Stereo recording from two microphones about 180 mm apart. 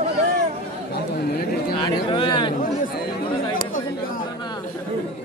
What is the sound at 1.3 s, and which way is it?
Chatter, 60° left (ahead or behind).